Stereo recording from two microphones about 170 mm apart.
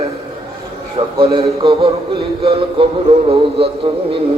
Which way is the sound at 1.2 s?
35° right (ahead or behind).